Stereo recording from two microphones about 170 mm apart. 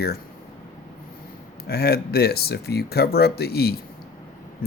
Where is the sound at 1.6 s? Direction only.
70° left (ahead or behind).